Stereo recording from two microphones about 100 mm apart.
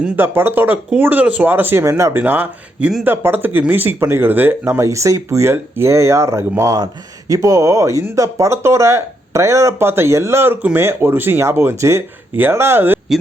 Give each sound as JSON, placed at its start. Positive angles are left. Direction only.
{"t": 0.2, "sound": "speech", "side_deg": -20}
{"t": 2.2, "sound": "speech", "side_deg": -20}
{"t": 4.8, "sound": "speech", "side_deg": -30}